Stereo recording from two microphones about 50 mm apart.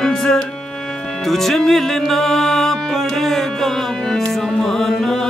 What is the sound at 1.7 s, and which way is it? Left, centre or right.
Music, centre.